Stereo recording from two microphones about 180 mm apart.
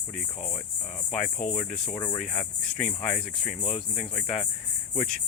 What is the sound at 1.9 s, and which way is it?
Speech, 25° left (ahead or behind).